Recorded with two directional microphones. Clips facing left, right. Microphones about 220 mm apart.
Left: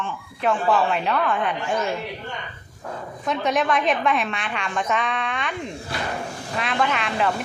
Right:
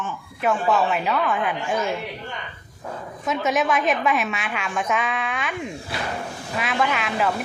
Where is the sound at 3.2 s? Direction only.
5° right (ahead or behind).